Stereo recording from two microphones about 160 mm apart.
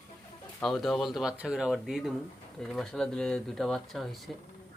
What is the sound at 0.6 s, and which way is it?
Speech, centre (ahead or behind).